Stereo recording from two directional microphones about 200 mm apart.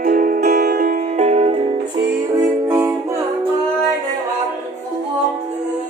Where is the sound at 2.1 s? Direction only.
10° right (ahead or behind).